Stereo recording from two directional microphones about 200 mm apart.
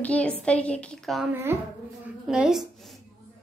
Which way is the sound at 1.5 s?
10° right (ahead or behind).